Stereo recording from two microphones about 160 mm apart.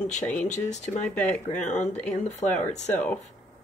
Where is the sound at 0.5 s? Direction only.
45° left (ahead or behind).